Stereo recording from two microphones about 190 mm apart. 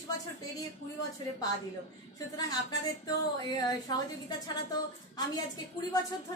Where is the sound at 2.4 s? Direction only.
20° left (ahead or behind).